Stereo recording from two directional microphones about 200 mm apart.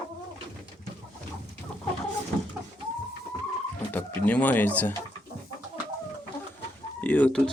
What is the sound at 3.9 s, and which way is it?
Speech, 10° left (ahead or behind).